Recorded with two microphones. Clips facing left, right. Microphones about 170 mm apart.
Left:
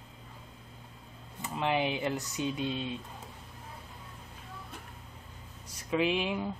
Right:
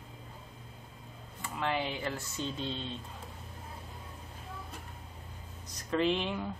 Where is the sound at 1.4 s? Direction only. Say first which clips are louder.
Left 3 dB; 20° left (ahead or behind).